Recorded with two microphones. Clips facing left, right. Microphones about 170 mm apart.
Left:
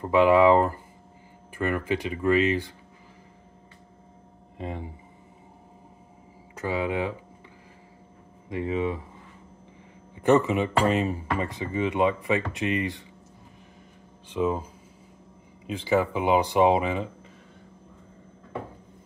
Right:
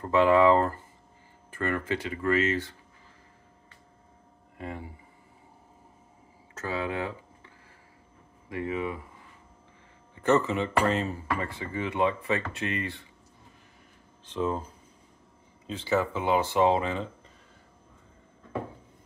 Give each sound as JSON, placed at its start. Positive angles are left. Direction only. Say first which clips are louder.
{"t": 0.0, "sound": "speech", "louder": "left 2 dB", "side_deg": 15}
{"t": 4.6, "sound": "speech", "louder": "left 3 dB", "side_deg": 20}
{"t": 6.5, "sound": "speech", "louder": "left 4 dB", "side_deg": 15}
{"t": 8.5, "sound": "speech", "louder": "left 4 dB", "side_deg": 20}
{"t": 10.1, "sound": "speech", "louder": "left 4 dB", "side_deg": 15}
{"t": 14.2, "sound": "speech", "louder": "left 3 dB", "side_deg": 10}